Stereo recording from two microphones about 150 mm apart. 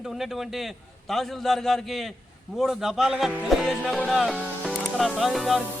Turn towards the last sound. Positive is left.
turn(degrees=0)  # may be behind; listen again after turning